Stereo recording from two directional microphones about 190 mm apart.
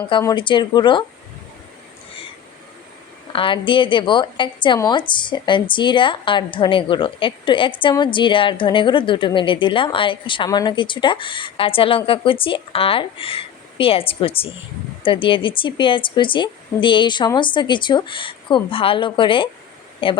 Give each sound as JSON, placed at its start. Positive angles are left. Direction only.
{"t": 0.1, "sound": "a woman's voice", "side_deg": 25}
{"t": 3.3, "sound": "a woman's voice", "side_deg": 25}